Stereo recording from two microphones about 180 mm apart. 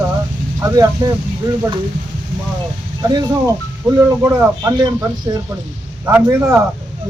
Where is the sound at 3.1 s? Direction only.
20° right (ahead or behind).